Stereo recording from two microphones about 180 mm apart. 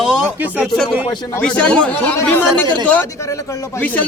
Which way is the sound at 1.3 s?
5° left (ahead or behind).